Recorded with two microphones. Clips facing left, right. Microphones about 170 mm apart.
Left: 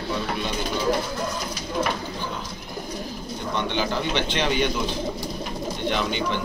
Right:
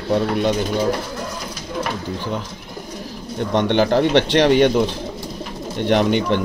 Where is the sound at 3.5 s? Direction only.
70° right (ahead or behind).